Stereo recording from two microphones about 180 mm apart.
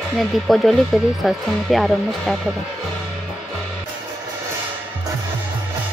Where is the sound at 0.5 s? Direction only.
Centre (ahead or behind).